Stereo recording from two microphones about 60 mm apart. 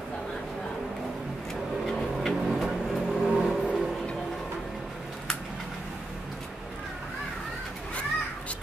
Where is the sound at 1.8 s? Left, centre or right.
Centre.